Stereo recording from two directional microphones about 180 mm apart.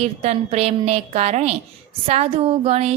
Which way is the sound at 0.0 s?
35° right (ahead or behind).